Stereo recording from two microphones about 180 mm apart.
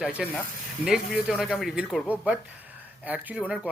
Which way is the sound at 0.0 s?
5° right (ahead or behind).